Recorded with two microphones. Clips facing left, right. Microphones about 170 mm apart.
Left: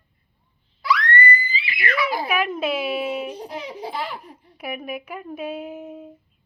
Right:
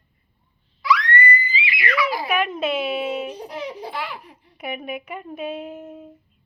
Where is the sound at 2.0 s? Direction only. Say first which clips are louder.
Even; 50° left (ahead or behind).